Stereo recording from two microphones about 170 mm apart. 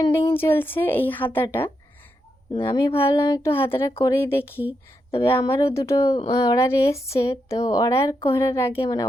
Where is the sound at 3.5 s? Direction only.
15° left (ahead or behind).